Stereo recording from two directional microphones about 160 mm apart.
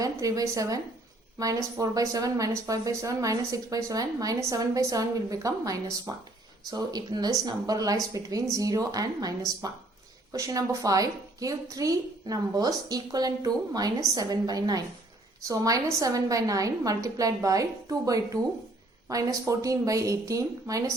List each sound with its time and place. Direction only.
0.0 s speech: 20° right (ahead or behind)